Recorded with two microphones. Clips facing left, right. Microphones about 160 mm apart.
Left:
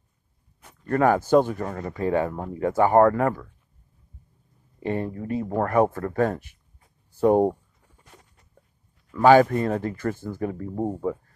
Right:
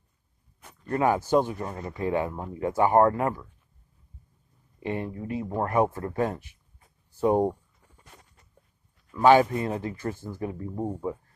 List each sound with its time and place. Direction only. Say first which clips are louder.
0.8 s speech: left 4 dB; 50° left (ahead or behind)
4.7 s speech: left 4 dB; 40° left (ahead or behind)
9.2 s speech: left 3 dB; 50° left (ahead or behind)